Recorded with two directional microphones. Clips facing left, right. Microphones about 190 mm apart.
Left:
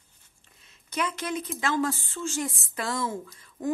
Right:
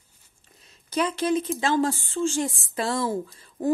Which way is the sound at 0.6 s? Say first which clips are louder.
Right 5 dB; 35° right (ahead or behind).